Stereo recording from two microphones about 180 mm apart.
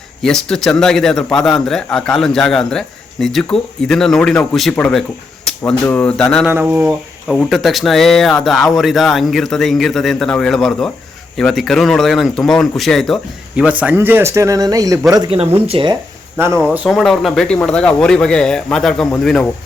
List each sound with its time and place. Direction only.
0.2 s a man's voice: 5° left (ahead or behind)
6.5 s speech: 10° right (ahead or behind)
7.3 s a man's voice: centre (ahead or behind); by 16.0 s 25° right (ahead or behind)
16.7 s a man's voice: centre (ahead or behind)